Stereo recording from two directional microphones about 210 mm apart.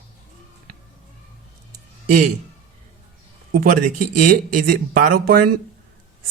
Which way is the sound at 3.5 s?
40° right (ahead or behind).